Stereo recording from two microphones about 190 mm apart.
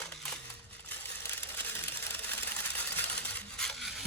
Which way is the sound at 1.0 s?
10° left (ahead or behind).